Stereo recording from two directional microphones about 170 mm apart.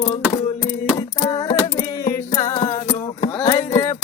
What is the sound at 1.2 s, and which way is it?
Music, 20° left (ahead or behind).